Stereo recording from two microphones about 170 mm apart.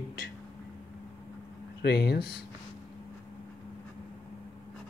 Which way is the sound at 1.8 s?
70° left (ahead or behind).